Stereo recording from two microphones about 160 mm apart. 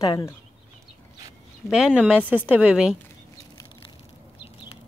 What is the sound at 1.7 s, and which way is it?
Speech, 5° right (ahead or behind).